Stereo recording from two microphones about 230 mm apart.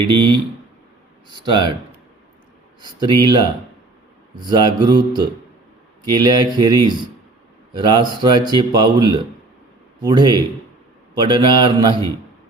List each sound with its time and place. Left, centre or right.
0.0 s speech: right
2.8 s speech: centre